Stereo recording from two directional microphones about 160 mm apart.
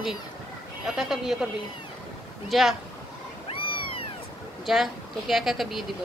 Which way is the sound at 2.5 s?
Centre (ahead or behind).